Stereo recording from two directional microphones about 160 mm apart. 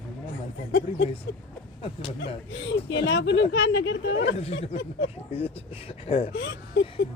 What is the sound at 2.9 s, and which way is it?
Speech, 90° left.